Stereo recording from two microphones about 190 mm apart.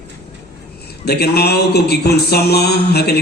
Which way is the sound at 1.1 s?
55° left (ahead or behind).